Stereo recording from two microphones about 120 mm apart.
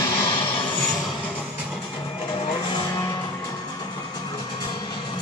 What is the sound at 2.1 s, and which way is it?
Vehicle, 45° left (ahead or behind).